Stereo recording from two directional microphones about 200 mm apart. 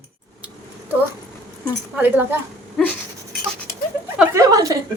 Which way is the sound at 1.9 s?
10° right (ahead or behind).